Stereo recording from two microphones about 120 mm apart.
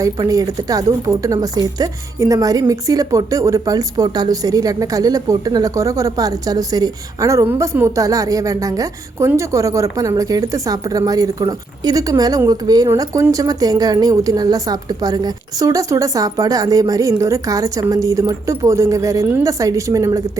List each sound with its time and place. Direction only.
0.0 s a woman's voice: 30° right (ahead or behind)